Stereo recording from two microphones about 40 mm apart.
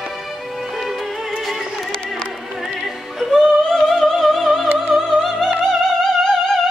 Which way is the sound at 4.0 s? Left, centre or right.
Centre.